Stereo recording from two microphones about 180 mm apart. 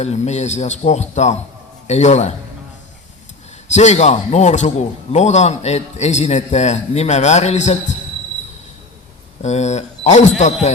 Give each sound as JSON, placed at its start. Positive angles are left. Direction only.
{"t": 0.0, "sound": "a man's voice", "side_deg": 40}
{"t": 3.8, "sound": "a man's voice", "side_deg": 40}
{"t": 9.4, "sound": "a man's voice", "side_deg": 40}